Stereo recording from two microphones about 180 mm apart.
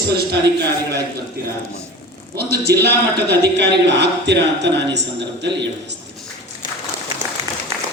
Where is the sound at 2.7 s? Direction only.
65° right (ahead or behind).